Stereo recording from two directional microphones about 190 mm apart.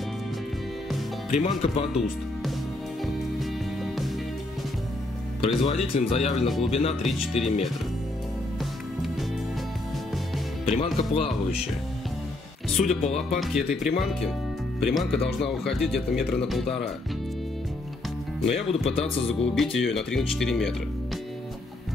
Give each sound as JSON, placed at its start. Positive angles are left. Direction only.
{"t": 0.8, "sound": "music", "side_deg": 0}
{"t": 1.4, "sound": "speech", "side_deg": 30}
{"t": 3.0, "sound": "music", "side_deg": 0}
{"t": 5.4, "sound": "speech", "side_deg": 30}
{"t": 6.3, "sound": "speech", "side_deg": 0}
{"t": 6.7, "sound": "speech", "side_deg": 30}
{"t": 7.0, "sound": "speech", "side_deg": 0}
{"t": 10.6, "sound": "speech", "side_deg": 30}
{"t": 12.6, "sound": "music", "side_deg": 0}
{"t": 13.3, "sound": "speech", "side_deg": 0}
{"t": 18.4, "sound": "speech", "side_deg": 0}
{"t": 18.7, "sound": "speech", "side_deg": 30}
{"t": 19.5, "sound": "speech", "side_deg": 0}